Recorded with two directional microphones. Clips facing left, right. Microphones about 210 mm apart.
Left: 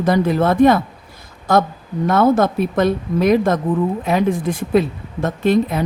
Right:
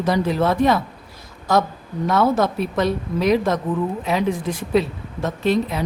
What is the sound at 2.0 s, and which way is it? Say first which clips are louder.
A woman's voice: left 4 dB; 50° left (ahead or behind).